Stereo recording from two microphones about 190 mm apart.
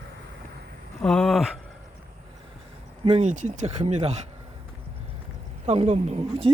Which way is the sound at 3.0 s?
35° right (ahead or behind).